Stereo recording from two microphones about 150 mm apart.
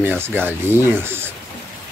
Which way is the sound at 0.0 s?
15° right (ahead or behind).